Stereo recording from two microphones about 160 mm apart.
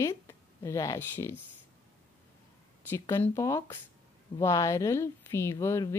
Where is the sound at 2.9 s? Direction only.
15° left (ahead or behind).